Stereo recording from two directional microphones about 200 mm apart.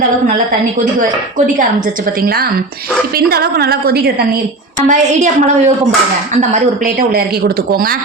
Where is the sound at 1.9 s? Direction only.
45° right (ahead or behind).